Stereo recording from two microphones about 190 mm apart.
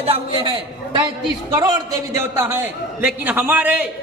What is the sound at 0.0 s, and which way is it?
A man's voice, 30° right (ahead or behind).